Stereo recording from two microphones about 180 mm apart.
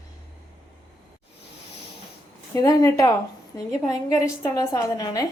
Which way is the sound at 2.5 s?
20° left (ahead or behind).